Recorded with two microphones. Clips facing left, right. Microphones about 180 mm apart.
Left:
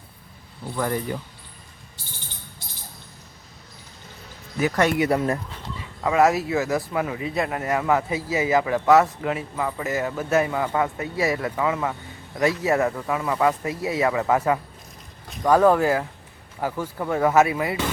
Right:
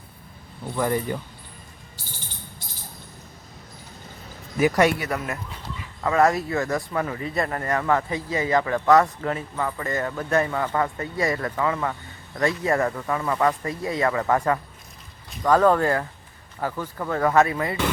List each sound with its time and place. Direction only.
4.6 s speech: 10° right (ahead or behind)
4.9 s speech: 30° left (ahead or behind)
6.0 s speech: 10° left (ahead or behind)